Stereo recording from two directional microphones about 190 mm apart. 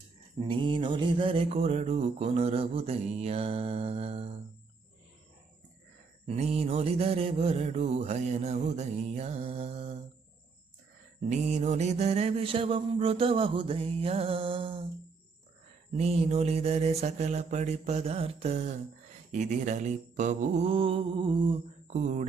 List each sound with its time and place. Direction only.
0.3 s mantra: 25° right (ahead or behind)
6.2 s mantra: 35° right (ahead or behind)
11.3 s mantra: 40° right (ahead or behind)
16.0 s mantra: 35° right (ahead or behind)
21.8 s speech: 40° right (ahead or behind)